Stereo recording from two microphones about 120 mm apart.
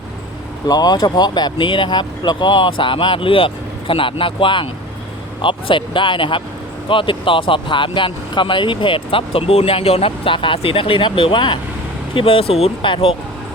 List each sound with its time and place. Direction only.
0.7 s speech: 35° left (ahead or behind)